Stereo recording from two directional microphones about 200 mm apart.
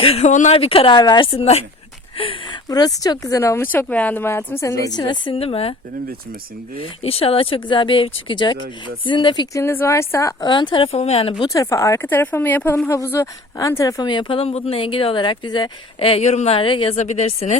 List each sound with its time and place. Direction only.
0.0 s speech: 30° left (ahead or behind)
7.0 s speech: 30° left (ahead or behind)
11.5 s speech: 15° left (ahead or behind); by 17.6 s 35° left (ahead or behind)